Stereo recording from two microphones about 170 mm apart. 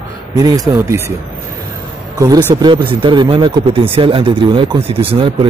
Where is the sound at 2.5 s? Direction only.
25° right (ahead or behind).